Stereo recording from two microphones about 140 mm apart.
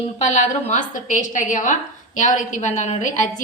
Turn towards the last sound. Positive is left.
turn(degrees=65)  # may be behind; listen again after turning